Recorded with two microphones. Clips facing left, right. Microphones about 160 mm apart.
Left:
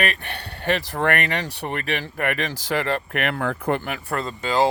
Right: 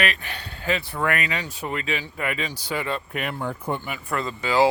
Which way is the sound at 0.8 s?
80° left.